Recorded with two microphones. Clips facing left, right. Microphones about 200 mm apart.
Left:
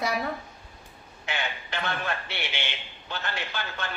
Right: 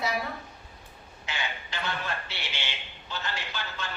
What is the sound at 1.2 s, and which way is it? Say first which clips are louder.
Speech: left 3 dB; 60° left (ahead or behind).